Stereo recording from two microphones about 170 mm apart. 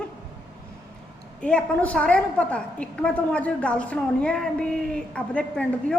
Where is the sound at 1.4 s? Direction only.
5° left (ahead or behind).